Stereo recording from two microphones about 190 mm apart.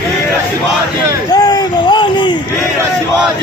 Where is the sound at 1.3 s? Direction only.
20° left (ahead or behind).